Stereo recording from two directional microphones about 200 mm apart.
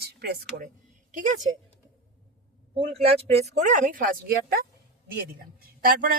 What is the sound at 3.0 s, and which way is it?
Speech, 30° right (ahead or behind).